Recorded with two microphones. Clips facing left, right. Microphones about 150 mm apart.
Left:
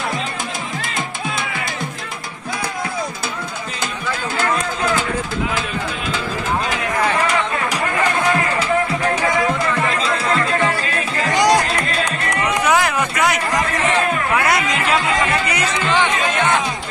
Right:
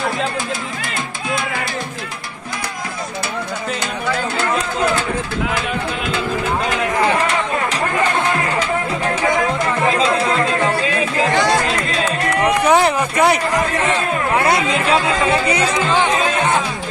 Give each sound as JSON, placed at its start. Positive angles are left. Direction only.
{"t": 11.3, "sound": "music", "side_deg": 15}
{"t": 12.4, "sound": "a sound", "side_deg": -30}
{"t": 14.3, "sound": "chatter", "side_deg": -30}